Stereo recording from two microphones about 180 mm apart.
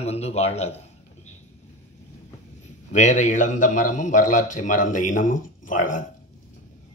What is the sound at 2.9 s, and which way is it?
A man's voice, 45° left (ahead or behind).